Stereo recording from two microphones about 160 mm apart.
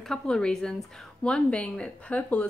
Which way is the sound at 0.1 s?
5° left (ahead or behind).